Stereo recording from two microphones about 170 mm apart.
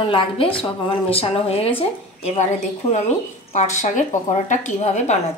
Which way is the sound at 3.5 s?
45° left (ahead or behind).